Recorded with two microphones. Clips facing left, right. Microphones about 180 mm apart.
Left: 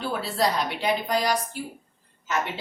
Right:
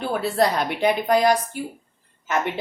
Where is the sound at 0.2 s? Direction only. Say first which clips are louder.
Right 5 dB; 55° right (ahead or behind).